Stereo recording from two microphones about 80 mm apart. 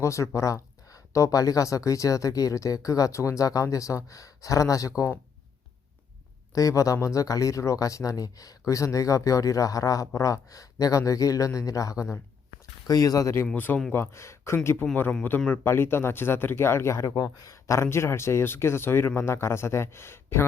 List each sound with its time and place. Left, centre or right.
0.0 s speech: left
6.5 s speech: left